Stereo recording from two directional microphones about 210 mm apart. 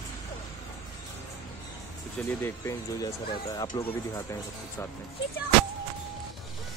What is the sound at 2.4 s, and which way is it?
Speech, 15° left (ahead or behind).